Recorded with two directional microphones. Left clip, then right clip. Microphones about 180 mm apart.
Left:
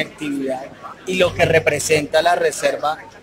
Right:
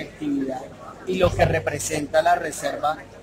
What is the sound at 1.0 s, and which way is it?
Speech, 25° left (ahead or behind).